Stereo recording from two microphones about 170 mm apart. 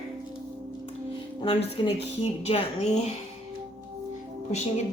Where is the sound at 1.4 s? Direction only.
30° left (ahead or behind).